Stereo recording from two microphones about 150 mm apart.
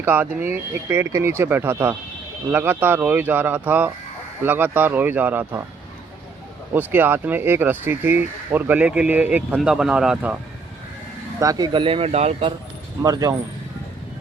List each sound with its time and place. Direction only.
0.0 s speech: 15° right (ahead or behind)
6.7 s speech: 15° right (ahead or behind)
11.3 s speech: 25° right (ahead or behind); by 12.5 s 40° right (ahead or behind)
13.0 s speech: 25° right (ahead or behind)